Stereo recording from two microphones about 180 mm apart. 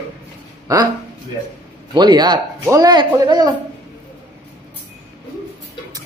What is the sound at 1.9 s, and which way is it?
A man's voice, 25° right (ahead or behind).